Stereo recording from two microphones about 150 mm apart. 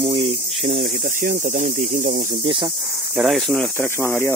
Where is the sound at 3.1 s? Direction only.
Centre (ahead or behind).